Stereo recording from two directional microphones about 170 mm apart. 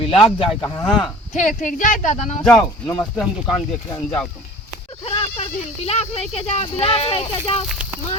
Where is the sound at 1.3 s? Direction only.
50° left (ahead or behind).